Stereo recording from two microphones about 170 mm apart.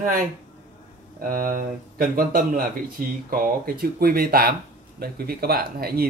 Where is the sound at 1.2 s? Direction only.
55° right (ahead or behind).